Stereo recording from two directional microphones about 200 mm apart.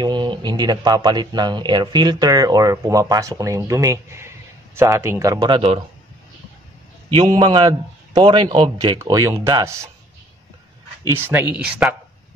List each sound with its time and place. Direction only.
0.0 s speech: 20° right (ahead or behind)
7.1 s speech: 25° right (ahead or behind)
11.1 s speech: 10° right (ahead or behind)